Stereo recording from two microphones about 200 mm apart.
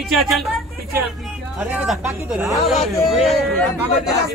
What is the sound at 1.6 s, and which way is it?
Speech, 5° right (ahead or behind).